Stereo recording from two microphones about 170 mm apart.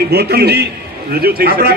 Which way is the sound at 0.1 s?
65° right (ahead or behind).